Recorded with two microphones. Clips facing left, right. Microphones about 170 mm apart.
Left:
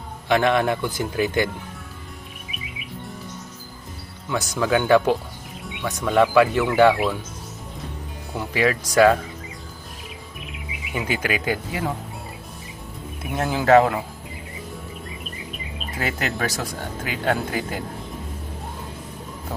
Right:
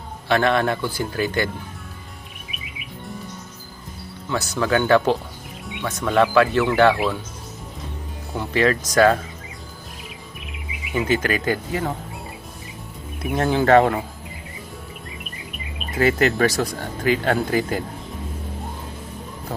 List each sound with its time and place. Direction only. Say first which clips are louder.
0.3 s a man's voice: even; 15° left (ahead or behind)
4.3 s a man's voice: even; 10° left (ahead or behind)
6.1 s a man's voice: even; 15° left (ahead or behind)
8.4 s a man's voice: right 2 dB; 10° left (ahead or behind)
11.0 s a man's voice: right 3 dB; 10° left (ahead or behind)
13.3 s speech: right 1 dB; 5° left (ahead or behind)
16.0 s speech: right 8 dB; centre (ahead or behind)